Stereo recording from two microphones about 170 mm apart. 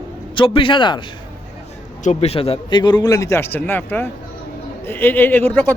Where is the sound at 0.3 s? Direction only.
30° left (ahead or behind).